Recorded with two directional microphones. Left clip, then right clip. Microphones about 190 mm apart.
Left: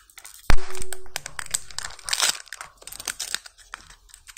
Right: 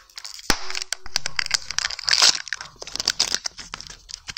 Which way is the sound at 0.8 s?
15° right (ahead or behind).